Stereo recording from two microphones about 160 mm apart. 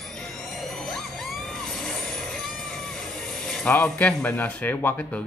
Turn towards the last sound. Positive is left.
turn(degrees=10)  # may be behind; listen again after turning